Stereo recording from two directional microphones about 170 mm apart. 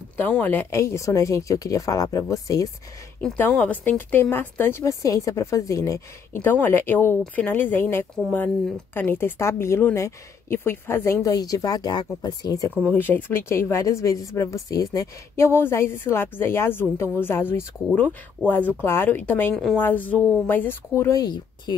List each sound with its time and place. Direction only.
0.2 s a woman's voice: 10° left (ahead or behind)
3.2 s speech: 10° left (ahead or behind)
12.8 s speech: 10° left (ahead or behind)